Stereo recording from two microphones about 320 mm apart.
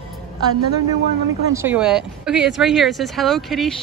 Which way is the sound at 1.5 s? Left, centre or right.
Centre.